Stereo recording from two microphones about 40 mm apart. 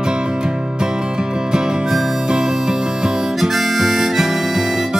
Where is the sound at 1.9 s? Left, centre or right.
Centre.